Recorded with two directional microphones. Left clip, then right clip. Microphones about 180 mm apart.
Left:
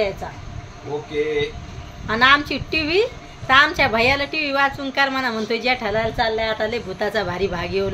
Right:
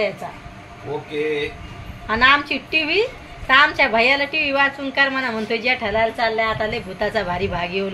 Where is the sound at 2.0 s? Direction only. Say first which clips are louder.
Even; 15° left (ahead or behind).